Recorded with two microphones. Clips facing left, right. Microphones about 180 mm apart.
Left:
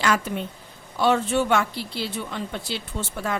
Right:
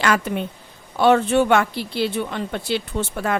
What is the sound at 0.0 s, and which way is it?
Speech, 65° right (ahead or behind).